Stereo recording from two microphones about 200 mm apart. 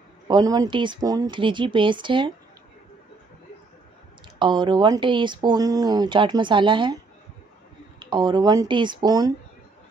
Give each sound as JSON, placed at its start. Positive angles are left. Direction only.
{"t": 0.3, "sound": "speech", "side_deg": -20}
{"t": 4.4, "sound": "speech", "side_deg": -20}
{"t": 8.0, "sound": "speech", "side_deg": -20}